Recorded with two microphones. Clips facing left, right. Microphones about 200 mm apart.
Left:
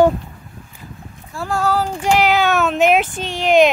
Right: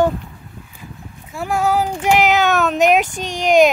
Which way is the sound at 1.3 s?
20° right (ahead or behind).